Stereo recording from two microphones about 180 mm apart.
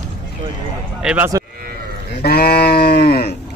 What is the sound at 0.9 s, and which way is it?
Speech, 5° right (ahead or behind).